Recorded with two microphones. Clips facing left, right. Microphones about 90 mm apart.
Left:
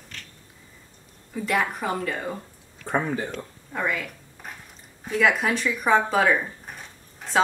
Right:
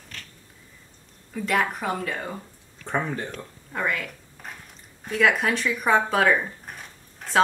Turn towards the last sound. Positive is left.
turn(degrees=0)  # may be behind; listen again after turning